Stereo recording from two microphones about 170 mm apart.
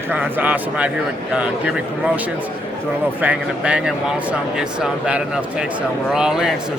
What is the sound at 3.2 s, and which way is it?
Speech, 5° right (ahead or behind).